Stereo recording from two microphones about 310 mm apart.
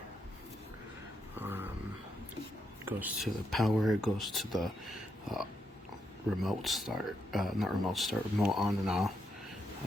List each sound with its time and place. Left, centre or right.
1.4 s dog: centre
2.8 s speech: centre